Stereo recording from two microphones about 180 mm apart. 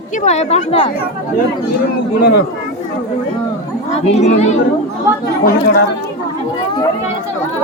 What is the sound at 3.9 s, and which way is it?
Speech, 35° left (ahead or behind).